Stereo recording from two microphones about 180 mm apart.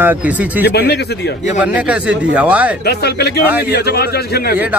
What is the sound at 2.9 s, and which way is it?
A man's voice, 65° left (ahead or behind).